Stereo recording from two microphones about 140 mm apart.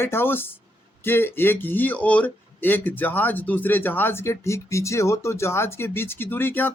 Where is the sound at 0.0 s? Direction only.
15° left (ahead or behind).